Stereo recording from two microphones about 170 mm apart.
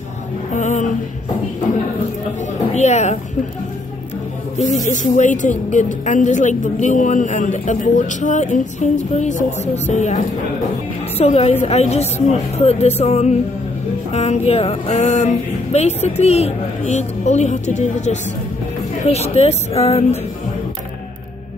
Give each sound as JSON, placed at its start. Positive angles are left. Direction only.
{"t": 0.6, "sound": "music", "side_deg": 45}
{"t": 2.7, "sound": "a sound", "side_deg": 40}
{"t": 4.8, "sound": "a woman's voice", "side_deg": 45}
{"t": 11.1, "sound": "music", "side_deg": 40}